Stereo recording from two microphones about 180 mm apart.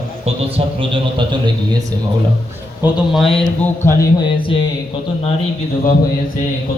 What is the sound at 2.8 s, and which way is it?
Speech, 5° right (ahead or behind).